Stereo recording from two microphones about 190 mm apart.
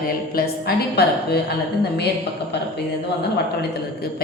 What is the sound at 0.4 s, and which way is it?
Speech, 50° left (ahead or behind).